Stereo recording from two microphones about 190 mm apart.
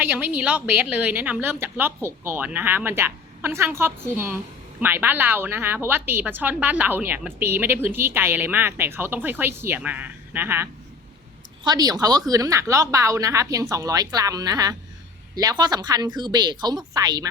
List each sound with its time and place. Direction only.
0.0 s a woman's voice: 10° right (ahead or behind)